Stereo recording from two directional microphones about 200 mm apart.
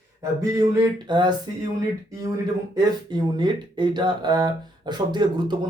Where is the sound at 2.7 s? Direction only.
20° right (ahead or behind).